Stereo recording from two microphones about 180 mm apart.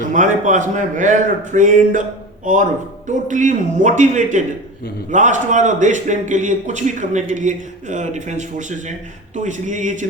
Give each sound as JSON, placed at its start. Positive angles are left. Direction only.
{"t": 0.0, "sound": "a man's voice", "side_deg": -45}